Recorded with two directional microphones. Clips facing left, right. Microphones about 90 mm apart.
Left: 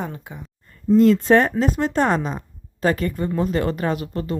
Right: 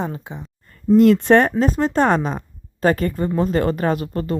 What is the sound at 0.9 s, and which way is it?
Speech, 65° right (ahead or behind).